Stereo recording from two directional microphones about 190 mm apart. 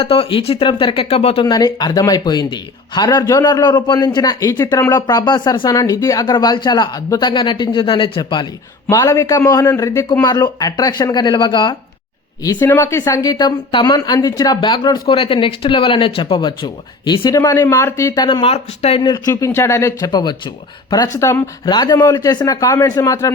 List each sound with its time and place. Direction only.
0.0 s speech: 30° left (ahead or behind)
12.5 s speech: 10° left (ahead or behind)